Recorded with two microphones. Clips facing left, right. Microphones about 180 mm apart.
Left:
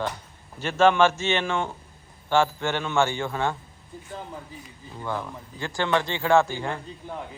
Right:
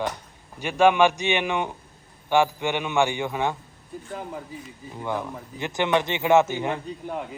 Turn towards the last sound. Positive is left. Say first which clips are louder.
# right 4 dB
turn(degrees=-20)  # may be behind; listen again after turning